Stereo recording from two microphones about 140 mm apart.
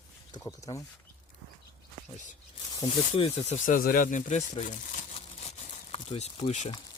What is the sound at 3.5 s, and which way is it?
Speech, 80° left.